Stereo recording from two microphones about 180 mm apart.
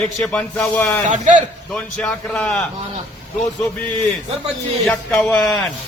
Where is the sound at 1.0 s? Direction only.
40° right (ahead or behind).